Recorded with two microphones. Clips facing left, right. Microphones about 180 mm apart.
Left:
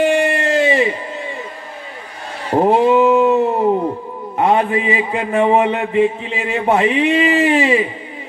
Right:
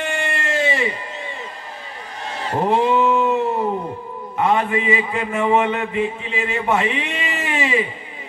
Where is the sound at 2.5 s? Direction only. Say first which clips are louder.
Left 6 dB; 40° left (ahead or behind).